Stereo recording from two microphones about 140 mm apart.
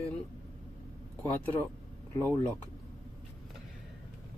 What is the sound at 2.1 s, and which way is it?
Speech, 20° left (ahead or behind).